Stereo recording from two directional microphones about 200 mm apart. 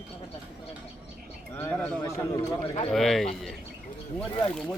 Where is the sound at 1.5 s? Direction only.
10° left (ahead or behind).